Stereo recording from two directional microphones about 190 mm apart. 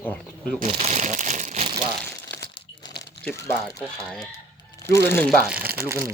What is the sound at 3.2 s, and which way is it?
Speech, 10° left (ahead or behind).